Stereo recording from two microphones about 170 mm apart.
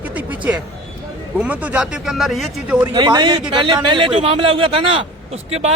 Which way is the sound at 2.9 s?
25° right (ahead or behind).